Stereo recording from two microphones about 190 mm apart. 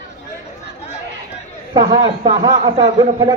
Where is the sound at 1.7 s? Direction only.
20° right (ahead or behind).